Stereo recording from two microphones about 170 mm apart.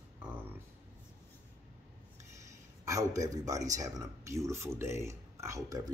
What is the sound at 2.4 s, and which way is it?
A man's voice, 20° right (ahead or behind).